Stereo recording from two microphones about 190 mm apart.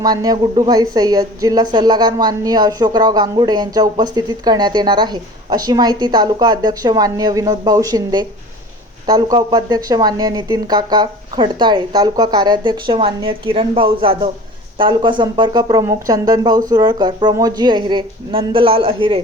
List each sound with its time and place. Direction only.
0.0 s a woman's voice: 20° right (ahead or behind)